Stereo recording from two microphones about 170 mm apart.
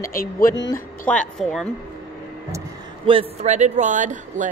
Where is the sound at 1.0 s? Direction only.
5° left (ahead or behind).